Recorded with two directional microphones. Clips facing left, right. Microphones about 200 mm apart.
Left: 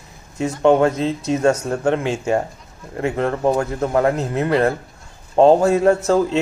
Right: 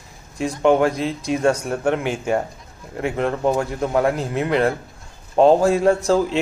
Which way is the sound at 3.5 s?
10° right (ahead or behind).